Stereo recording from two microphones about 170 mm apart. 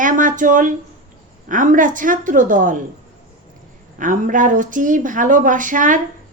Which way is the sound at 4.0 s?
50° right (ahead or behind).